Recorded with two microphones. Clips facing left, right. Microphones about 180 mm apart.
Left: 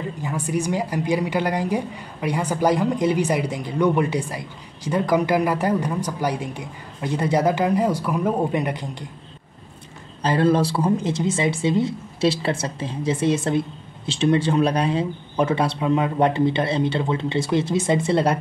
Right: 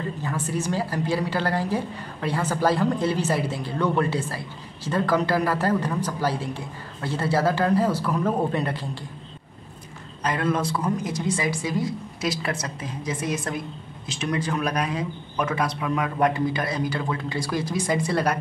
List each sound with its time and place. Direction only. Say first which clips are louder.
0.2 s a woman's voice: left 6 dB; 15° left (ahead or behind)
10.2 s a woman's voice: left 6 dB; 30° left (ahead or behind)